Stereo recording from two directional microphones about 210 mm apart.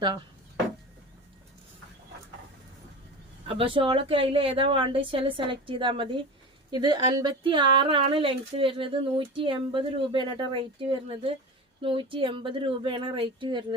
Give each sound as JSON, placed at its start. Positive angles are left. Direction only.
{"t": 3.5, "sound": "speech", "side_deg": -25}